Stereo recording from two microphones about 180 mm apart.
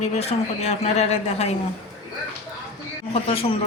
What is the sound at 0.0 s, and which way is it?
Speech, 35° left (ahead or behind).